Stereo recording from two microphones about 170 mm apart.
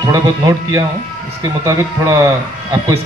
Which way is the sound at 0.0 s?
20° right (ahead or behind).